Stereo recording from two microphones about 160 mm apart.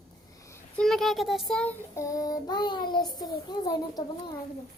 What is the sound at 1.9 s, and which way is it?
A child's voice, 20° left (ahead or behind).